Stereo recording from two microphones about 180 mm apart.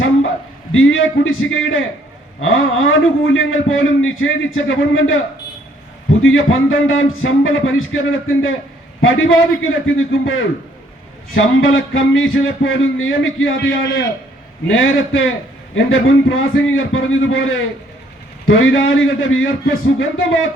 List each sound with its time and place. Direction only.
0.7 s a man's voice: 90° left
6.2 s a man's voice: 90° left